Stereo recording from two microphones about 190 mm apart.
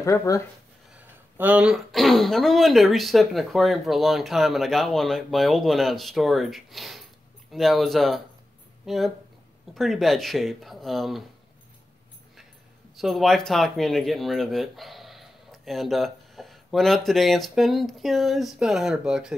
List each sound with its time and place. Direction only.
0.0 s speech: 15° left (ahead or behind)
0.9 s speech: 5° right (ahead or behind)
12.9 s speech: centre (ahead or behind)